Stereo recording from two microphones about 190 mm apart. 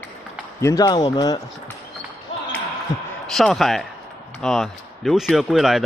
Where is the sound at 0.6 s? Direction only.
20° left (ahead or behind).